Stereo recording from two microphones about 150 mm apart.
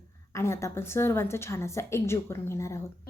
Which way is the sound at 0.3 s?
20° left (ahead or behind).